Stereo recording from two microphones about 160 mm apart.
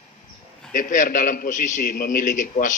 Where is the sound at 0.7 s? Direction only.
55° left (ahead or behind).